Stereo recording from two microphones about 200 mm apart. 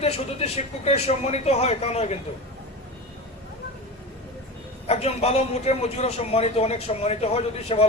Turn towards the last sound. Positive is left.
turn(degrees=30)  # may be behind; listen again after turning